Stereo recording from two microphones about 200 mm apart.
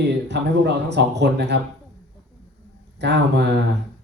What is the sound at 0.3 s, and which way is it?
A man's voice, 60° right (ahead or behind).